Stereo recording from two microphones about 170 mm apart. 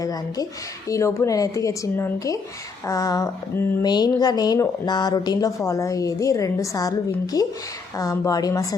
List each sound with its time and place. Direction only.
0.0 s speech: 20° left (ahead or behind)